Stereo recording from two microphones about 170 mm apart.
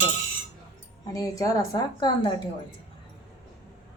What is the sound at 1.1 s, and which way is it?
A woman's voice, 20° left (ahead or behind).